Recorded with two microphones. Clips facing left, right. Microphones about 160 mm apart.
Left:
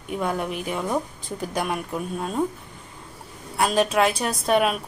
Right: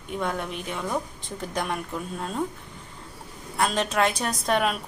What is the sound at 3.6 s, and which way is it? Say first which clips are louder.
A woman's voice: left 4 dB; 10° left (ahead or behind).